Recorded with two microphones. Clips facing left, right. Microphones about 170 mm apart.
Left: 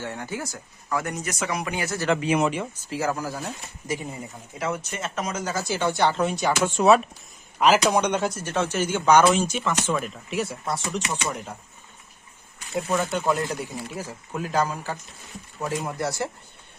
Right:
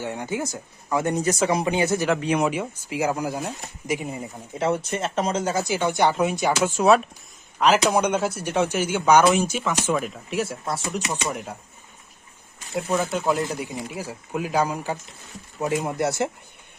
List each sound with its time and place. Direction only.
0.0 s speech: 15° right (ahead or behind)
2.0 s speech: centre (ahead or behind)
2.5 s speech: 10° right (ahead or behind)
6.7 s speech: centre (ahead or behind)
12.7 s speech: centre (ahead or behind)
13.7 s speech: 15° right (ahead or behind)